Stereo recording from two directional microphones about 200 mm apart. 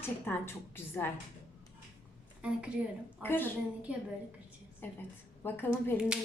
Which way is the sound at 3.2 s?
10° left (ahead or behind).